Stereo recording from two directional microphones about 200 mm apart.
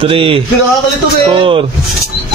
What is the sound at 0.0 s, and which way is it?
A man's voice, 25° right (ahead or behind).